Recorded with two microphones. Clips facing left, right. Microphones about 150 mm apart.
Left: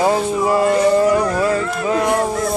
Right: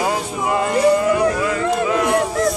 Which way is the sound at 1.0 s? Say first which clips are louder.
Left 2 dB; 35° left (ahead or behind).